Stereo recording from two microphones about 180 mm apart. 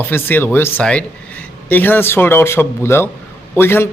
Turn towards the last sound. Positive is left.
turn(degrees=10)  # may be behind; listen again after turning